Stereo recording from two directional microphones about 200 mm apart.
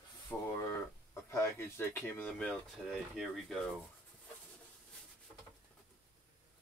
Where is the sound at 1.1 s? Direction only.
15° left (ahead or behind).